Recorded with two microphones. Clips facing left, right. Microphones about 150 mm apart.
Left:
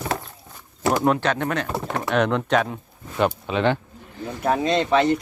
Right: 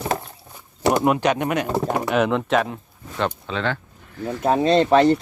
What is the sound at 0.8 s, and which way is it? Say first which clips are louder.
Speech: right 2 dB; 15° right (ahead or behind).